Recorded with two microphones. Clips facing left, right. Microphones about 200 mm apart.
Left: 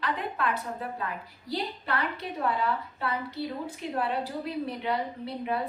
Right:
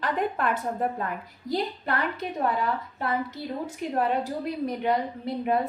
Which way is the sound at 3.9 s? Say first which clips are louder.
Right 4 dB; 45° right (ahead or behind).